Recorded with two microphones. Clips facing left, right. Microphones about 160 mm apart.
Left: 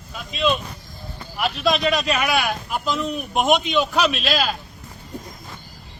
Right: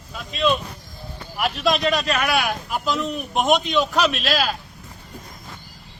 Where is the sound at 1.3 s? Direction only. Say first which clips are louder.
Even; centre (ahead or behind).